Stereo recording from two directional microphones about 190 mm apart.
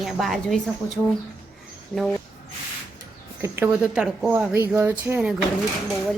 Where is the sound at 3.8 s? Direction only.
5° right (ahead or behind).